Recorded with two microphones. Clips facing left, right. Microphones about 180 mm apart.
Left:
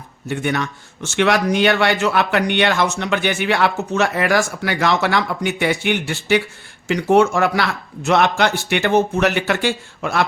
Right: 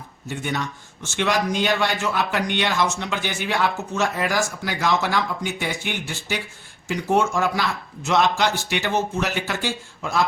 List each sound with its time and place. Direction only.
0.3 s speech: 70° left (ahead or behind)